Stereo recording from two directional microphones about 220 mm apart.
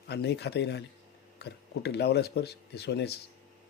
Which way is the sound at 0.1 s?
50° left (ahead or behind).